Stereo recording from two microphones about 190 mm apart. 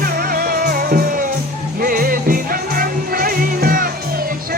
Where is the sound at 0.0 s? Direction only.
50° right (ahead or behind).